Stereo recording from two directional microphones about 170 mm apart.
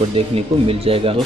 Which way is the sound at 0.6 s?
35° right (ahead or behind).